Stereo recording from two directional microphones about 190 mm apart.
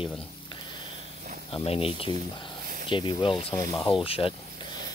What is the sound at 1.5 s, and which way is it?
Speech, 30° left (ahead or behind).